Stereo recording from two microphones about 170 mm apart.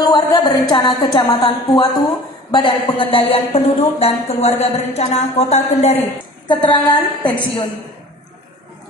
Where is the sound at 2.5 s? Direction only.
30° left (ahead or behind).